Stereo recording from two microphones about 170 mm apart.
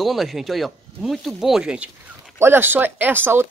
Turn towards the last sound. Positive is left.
turn(degrees=-10)  # may be behind; listen again after turning